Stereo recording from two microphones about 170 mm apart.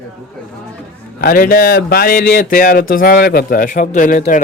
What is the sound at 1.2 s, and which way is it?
Speech, 60° left (ahead or behind).